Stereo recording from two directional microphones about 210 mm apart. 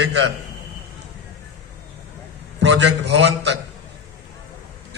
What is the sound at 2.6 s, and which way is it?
Speech, 55° right (ahead or behind).